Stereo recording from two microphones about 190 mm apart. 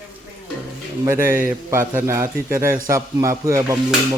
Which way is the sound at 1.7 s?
15° right (ahead or behind).